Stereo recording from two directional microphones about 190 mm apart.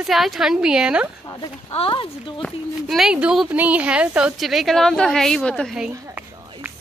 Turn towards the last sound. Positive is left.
turn(degrees=0)  # may be behind; listen again after turning